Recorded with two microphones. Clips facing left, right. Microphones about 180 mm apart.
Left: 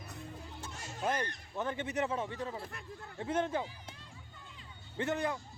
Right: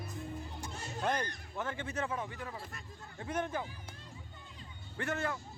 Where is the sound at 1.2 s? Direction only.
20° left (ahead or behind).